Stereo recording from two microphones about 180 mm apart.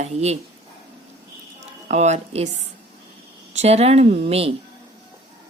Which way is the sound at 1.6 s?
40° right (ahead or behind).